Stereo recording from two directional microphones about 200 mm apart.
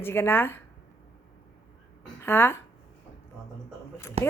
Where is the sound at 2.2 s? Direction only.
10° left (ahead or behind).